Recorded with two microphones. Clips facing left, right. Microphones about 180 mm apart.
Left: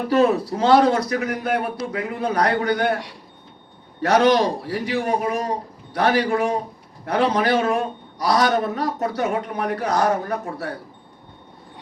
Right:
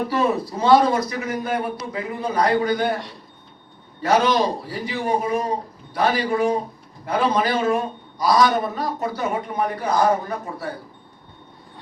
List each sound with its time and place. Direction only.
0.1 s a man's voice: 70° left (ahead or behind)
4.0 s a man's voice: 70° left (ahead or behind)